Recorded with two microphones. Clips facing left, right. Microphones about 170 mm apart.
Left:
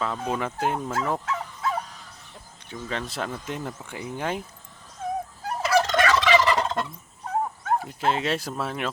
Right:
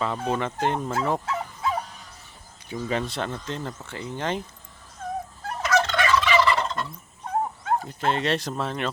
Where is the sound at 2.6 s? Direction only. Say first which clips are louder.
Right 5 dB; 5° right (ahead or behind).